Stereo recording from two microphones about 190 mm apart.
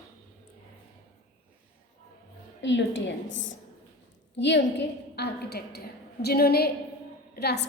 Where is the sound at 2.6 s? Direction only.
75° left (ahead or behind).